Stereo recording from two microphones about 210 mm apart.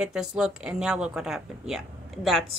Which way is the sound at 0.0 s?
5° right (ahead or behind).